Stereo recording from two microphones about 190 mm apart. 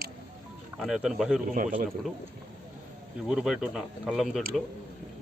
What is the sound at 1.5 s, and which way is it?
Speech, 45° right (ahead or behind).